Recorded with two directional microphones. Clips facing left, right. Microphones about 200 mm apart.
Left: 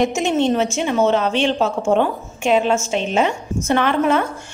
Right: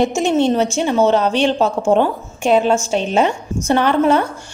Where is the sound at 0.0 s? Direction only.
35° right (ahead or behind).